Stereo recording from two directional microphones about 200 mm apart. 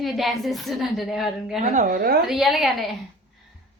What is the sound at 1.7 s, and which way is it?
Speech, 40° right (ahead or behind).